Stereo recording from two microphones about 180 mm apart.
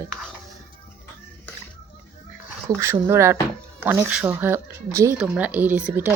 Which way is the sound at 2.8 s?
15° right (ahead or behind).